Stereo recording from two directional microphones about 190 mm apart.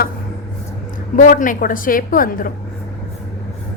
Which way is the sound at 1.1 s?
45° left (ahead or behind).